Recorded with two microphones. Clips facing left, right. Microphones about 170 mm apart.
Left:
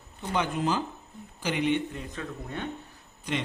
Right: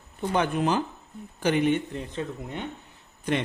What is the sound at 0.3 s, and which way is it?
Speech, 55° right (ahead or behind).